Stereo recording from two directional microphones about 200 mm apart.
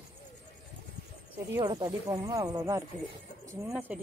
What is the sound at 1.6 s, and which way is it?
Speech, 20° right (ahead or behind).